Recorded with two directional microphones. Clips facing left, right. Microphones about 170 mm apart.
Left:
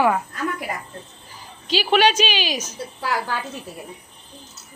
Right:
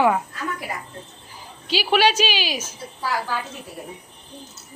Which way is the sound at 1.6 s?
10° right (ahead or behind).